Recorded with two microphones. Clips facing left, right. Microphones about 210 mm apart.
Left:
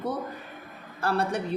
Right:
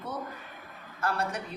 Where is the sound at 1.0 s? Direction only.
30° left (ahead or behind).